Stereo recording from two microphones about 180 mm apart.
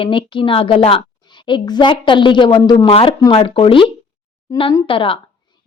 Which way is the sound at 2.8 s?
35° left (ahead or behind).